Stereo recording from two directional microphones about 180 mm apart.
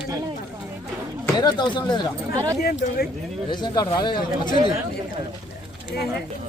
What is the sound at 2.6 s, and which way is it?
Speech, 60° left (ahead or behind).